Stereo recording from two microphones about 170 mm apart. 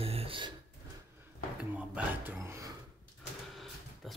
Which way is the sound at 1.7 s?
10° right (ahead or behind).